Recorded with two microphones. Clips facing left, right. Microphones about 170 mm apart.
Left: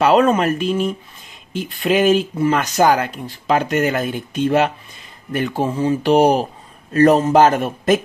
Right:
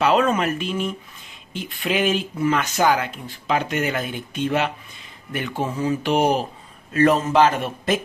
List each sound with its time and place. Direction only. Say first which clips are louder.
0.0 s speech: left 5 dB; 40° left (ahead or behind)